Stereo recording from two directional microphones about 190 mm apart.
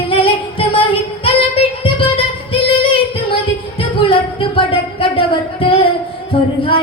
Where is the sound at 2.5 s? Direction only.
30° left (ahead or behind).